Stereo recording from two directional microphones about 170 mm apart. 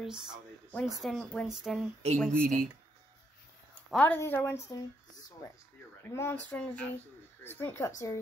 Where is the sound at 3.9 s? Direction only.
10° left (ahead or behind).